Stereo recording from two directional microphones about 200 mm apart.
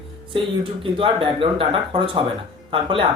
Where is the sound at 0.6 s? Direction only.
25° right (ahead or behind).